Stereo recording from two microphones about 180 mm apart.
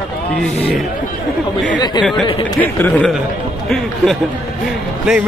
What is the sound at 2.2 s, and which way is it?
Speech, 25° left (ahead or behind).